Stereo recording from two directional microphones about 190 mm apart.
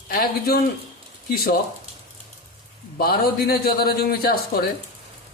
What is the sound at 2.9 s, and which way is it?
Speech, 50° left (ahead or behind).